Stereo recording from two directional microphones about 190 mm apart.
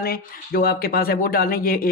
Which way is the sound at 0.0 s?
50° left (ahead or behind).